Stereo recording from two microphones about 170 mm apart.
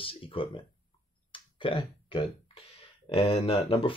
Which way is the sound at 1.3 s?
30° left (ahead or behind).